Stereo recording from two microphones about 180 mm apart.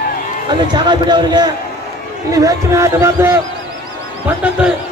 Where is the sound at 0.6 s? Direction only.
25° right (ahead or behind).